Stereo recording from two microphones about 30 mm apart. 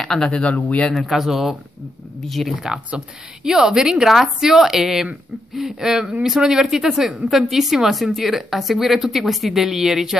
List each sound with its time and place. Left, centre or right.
0.0 s speech: left
0.3 s speech: left
1.0 s speech: centre
3.4 s speech: right
4.0 s speech: centre
6.9 s speech: centre